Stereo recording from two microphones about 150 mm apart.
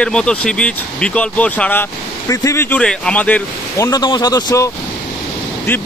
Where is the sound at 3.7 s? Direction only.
20° left (ahead or behind).